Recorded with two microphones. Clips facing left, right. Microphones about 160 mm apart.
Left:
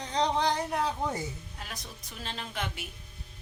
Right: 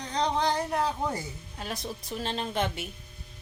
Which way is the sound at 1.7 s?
30° right (ahead or behind).